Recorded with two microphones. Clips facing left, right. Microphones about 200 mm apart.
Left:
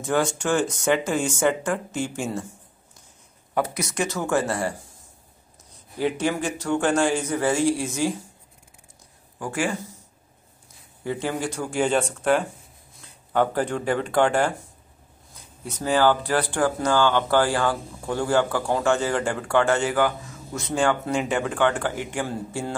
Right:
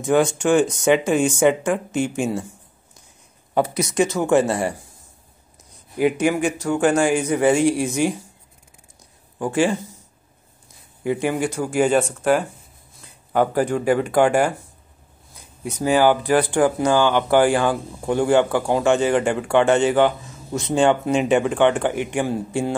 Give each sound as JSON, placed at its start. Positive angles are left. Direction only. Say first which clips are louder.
{"t": 0.0, "sound": "speech", "louder": "right 6 dB", "side_deg": -15}
{"t": 3.5, "sound": "speech", "louder": "right 6 dB", "side_deg": -20}
{"t": 5.9, "sound": "speech", "louder": "right 5 dB", "side_deg": -10}
{"t": 9.4, "sound": "speech", "louder": "right 7 dB", "side_deg": -25}
{"t": 11.1, "sound": "speech", "louder": "right 5 dB", "side_deg": -15}
{"t": 15.6, "sound": "speech", "louder": "right 4 dB", "side_deg": -15}